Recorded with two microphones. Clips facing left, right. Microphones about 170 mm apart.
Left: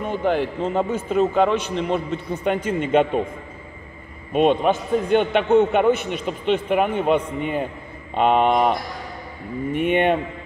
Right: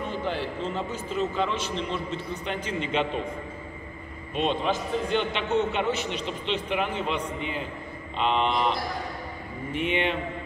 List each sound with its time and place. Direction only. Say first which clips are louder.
0.1 s a man's voice: left 8 dB; 55° left (ahead or behind)
4.3 s a man's voice: left 9 dB; 55° left (ahead or behind)